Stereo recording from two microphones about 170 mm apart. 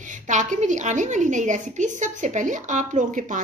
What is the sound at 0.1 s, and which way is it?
A woman's voice, 45° right (ahead or behind).